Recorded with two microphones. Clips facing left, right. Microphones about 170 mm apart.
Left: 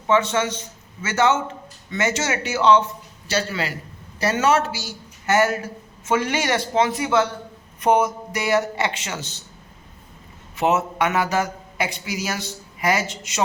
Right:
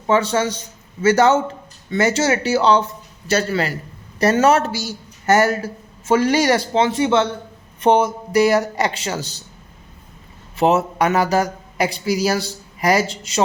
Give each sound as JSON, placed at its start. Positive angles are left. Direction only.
{"t": 0.1, "sound": "a man's voice", "side_deg": -35}
{"t": 10.6, "sound": "a man's voice", "side_deg": -35}